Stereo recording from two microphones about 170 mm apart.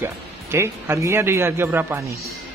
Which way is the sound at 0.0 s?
15° right (ahead or behind).